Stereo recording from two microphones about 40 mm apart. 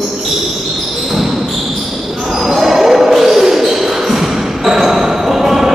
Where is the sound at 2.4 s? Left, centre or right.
Centre.